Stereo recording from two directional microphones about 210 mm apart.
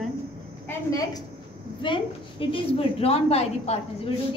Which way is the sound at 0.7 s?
15° left (ahead or behind).